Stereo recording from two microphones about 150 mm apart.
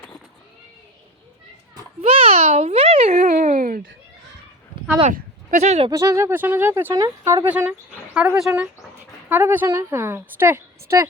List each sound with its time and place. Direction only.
2.0 s a child's voice: 40° right (ahead or behind)
3.3 s a sound: 55° right (ahead or behind)
5.0 s speech: 55° right (ahead or behind)
5.9 s a woman's voice: 20° right (ahead or behind)
7.4 s a woman's voice: 10° right (ahead or behind)